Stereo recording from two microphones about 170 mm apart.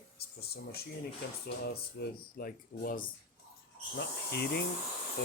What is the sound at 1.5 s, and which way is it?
Speech, 65° left (ahead or behind).